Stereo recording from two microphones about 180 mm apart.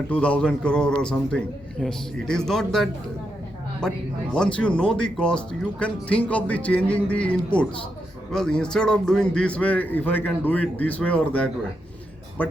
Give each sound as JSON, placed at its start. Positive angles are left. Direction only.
{"t": 0.1, "sound": "a man's voice", "side_deg": 5}